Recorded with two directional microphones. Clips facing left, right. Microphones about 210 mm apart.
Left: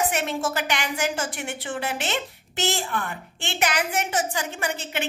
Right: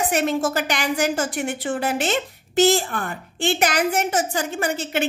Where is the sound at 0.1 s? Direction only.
40° right (ahead or behind).